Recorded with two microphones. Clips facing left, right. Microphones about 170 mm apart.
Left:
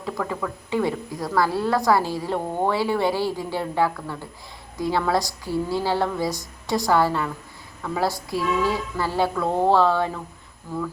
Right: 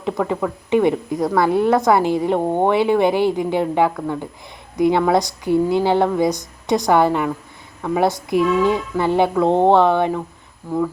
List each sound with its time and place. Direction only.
0.0 s speech: 20° right (ahead or behind)